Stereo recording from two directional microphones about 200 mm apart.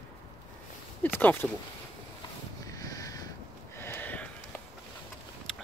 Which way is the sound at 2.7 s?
15° left (ahead or behind).